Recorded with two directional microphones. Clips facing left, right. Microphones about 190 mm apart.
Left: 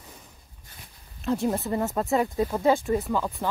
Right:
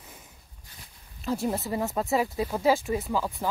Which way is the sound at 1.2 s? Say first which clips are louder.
Left 3 dB; centre (ahead or behind).